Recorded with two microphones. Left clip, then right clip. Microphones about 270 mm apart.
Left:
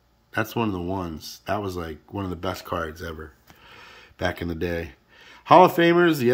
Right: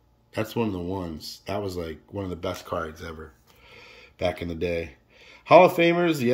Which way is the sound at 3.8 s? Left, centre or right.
Centre.